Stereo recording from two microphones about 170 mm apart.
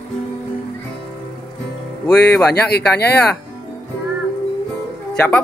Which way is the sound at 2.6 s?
70° left (ahead or behind).